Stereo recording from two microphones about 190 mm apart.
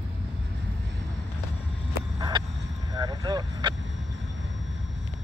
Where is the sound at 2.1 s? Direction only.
20° right (ahead or behind).